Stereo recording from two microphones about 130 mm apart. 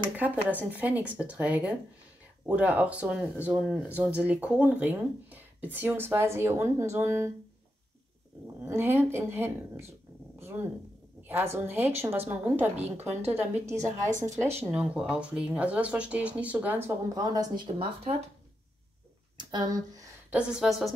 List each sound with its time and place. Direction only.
0.7 s speech: 15° right (ahead or behind)
8.6 s speech: 20° right (ahead or behind)
10.4 s a sound: 15° right (ahead or behind)
11.2 s a woman's voice: 15° right (ahead or behind)
17.7 s speech: 45° right (ahead or behind)
19.3 s speech: 30° right (ahead or behind)
20.2 s a woman's voice: 5° right (ahead or behind)